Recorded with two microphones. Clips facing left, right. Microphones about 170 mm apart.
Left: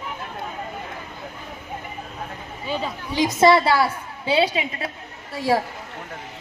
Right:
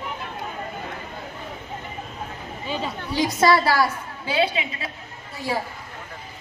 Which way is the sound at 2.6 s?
Centre (ahead or behind).